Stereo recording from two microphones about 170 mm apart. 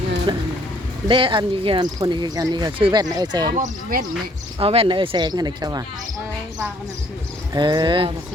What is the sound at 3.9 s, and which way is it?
Speech, 60° right (ahead or behind).